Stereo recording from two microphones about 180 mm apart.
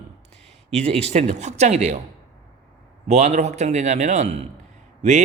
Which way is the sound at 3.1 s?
40° right (ahead or behind).